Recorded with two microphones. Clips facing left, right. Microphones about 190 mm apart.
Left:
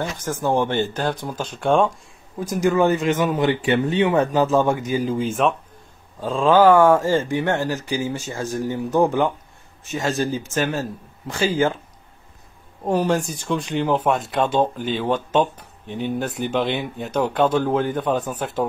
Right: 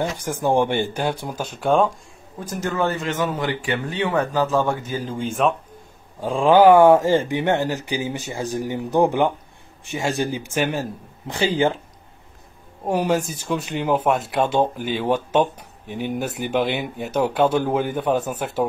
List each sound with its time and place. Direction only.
0.2 s speech: 15° right (ahead or behind)
2.5 s speech: 10° left (ahead or behind)
5.2 s speech: centre (ahead or behind)
6.2 s speech: 15° right (ahead or behind)
12.8 s speech: 10° right (ahead or behind)